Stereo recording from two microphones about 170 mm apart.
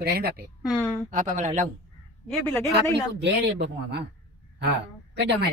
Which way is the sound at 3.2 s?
80° right.